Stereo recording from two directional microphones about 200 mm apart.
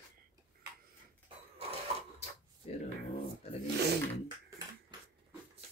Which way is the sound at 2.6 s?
30° left (ahead or behind).